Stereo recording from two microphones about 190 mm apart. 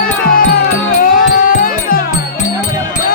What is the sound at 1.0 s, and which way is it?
Music, 45° left (ahead or behind).